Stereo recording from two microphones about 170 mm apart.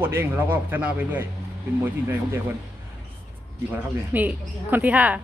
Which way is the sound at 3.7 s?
10° right (ahead or behind).